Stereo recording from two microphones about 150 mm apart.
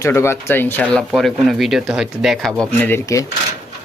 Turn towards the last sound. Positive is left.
turn(degrees=15)  # may be behind; listen again after turning